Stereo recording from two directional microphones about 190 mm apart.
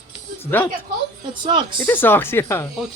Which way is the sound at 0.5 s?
10° left (ahead or behind).